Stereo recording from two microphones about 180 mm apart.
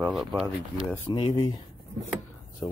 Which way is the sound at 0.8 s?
10° left (ahead or behind).